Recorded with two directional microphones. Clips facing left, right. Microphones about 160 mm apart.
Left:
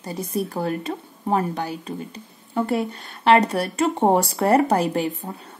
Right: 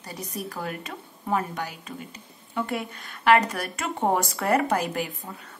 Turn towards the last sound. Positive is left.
turn(degrees=30)  # may be behind; listen again after turning